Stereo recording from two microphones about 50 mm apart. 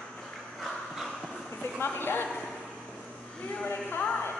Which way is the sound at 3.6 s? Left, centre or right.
Left.